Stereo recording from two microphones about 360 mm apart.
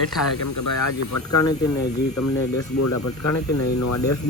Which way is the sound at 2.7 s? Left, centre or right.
Left.